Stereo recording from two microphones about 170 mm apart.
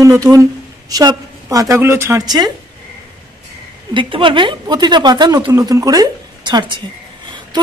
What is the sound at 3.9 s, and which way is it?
A woman's voice, 30° right (ahead or behind).